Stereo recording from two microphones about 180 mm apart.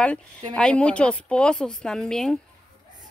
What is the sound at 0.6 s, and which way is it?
Speech, 5° left (ahead or behind).